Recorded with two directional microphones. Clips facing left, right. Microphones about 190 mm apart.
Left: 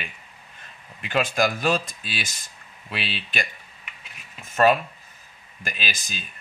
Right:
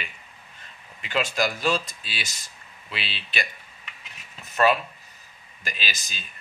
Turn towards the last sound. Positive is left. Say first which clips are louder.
# left 2 dB
turn(degrees=50)  # may be behind; listen again after turning